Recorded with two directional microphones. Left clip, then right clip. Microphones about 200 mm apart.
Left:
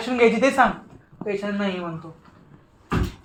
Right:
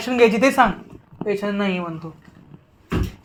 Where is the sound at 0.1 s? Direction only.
30° right (ahead or behind).